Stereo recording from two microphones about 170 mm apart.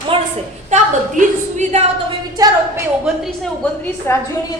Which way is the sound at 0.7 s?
45° right (ahead or behind).